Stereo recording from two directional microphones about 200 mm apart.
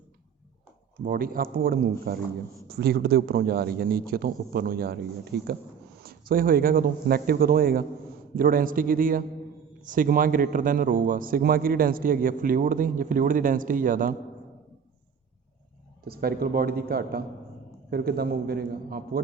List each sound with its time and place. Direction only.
1.0 s a man's voice: 45° right (ahead or behind)
16.0 s a man's voice: 50° right (ahead or behind)